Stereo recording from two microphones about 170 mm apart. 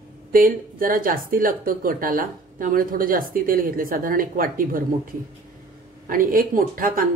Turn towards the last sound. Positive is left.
turn(degrees=-55)  # may be behind; listen again after turning